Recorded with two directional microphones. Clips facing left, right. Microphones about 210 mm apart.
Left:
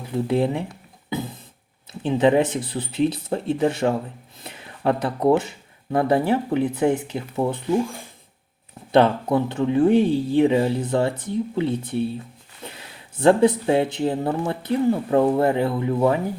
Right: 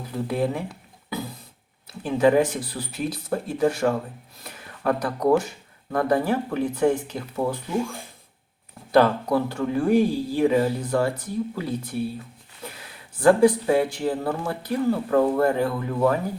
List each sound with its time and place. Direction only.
0.3 s speech: 25° left (ahead or behind)
1.1 s a sound: 25° left (ahead or behind)
1.9 s speech: 20° left (ahead or behind)
4.4 s a sound: 25° left (ahead or behind)
5.9 s speech: 25° left (ahead or behind)
8.9 s speech: 25° left (ahead or behind)
13.1 s speech: 25° left (ahead or behind)